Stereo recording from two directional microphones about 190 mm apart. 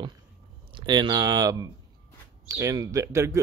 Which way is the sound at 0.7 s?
25° right (ahead or behind).